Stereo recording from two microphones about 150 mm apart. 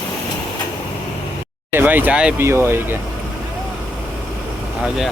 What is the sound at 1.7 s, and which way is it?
Speech, 15° right (ahead or behind).